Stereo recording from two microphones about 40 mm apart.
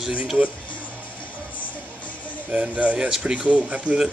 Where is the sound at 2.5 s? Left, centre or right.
Right.